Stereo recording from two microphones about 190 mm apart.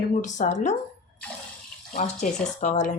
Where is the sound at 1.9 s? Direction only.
40° left (ahead or behind).